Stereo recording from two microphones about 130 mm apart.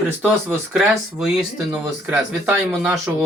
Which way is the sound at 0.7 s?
5° right (ahead or behind).